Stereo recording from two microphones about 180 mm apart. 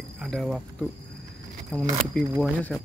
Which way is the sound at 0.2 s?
Centre (ahead or behind).